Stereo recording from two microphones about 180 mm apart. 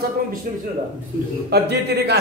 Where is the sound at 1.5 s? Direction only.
65° right (ahead or behind).